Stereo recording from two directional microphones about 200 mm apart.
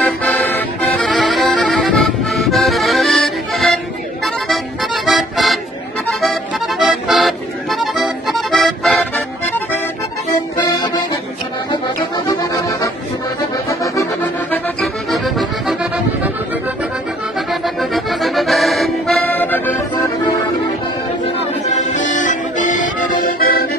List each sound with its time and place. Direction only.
0.0 s accordion: 5° left (ahead or behind)
5.0 s music: centre (ahead or behind)
6.8 s accordion: centre (ahead or behind)
14.5 s accordion: centre (ahead or behind)
17.5 s accordion: centre (ahead or behind)
21.6 s accordion: 35° left (ahead or behind)